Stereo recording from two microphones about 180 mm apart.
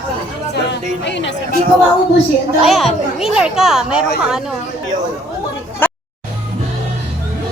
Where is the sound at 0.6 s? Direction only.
75° left (ahead or behind).